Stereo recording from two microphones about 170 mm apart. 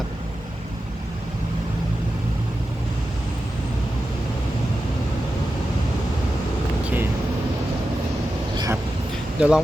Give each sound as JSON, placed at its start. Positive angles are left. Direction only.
{"t": 6.8, "sound": "vehicle", "side_deg": -10}
{"t": 8.5, "sound": "vehicle", "side_deg": -20}
{"t": 9.4, "sound": "speech", "side_deg": -5}